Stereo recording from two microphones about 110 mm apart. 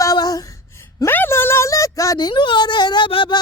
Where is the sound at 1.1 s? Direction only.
20° left (ahead or behind).